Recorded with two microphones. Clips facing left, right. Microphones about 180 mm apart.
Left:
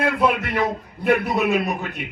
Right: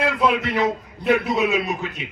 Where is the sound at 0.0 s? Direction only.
55° left (ahead or behind).